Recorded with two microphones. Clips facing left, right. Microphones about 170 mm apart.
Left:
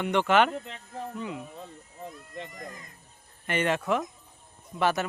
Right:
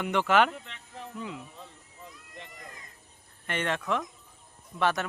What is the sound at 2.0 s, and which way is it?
Cat, 50° left (ahead or behind).